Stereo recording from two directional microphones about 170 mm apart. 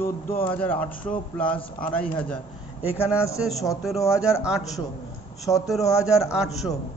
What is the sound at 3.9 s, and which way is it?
Speech, 15° left (ahead or behind).